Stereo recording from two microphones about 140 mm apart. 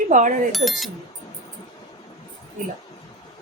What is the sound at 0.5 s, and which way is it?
Speech, centre (ahead or behind).